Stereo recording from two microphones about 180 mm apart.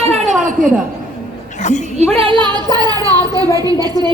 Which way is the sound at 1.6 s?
40° left (ahead or behind).